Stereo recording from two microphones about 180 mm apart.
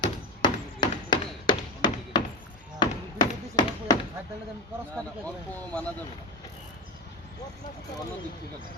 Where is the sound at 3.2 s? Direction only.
25° left (ahead or behind).